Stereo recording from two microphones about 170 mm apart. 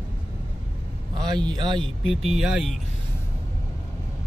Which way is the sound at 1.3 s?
25° right (ahead or behind).